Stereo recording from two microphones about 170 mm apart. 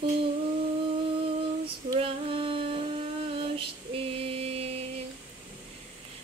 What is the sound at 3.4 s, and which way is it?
Female singing, 35° right (ahead or behind).